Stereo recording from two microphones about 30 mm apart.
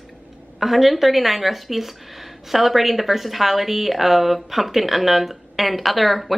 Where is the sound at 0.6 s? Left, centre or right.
Centre.